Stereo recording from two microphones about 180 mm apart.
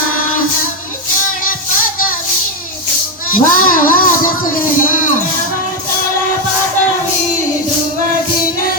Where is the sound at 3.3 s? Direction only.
50° left (ahead or behind).